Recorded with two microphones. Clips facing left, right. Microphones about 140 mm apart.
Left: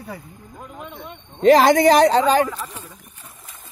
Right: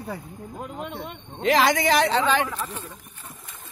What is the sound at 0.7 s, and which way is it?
Speech, 70° right (ahead or behind).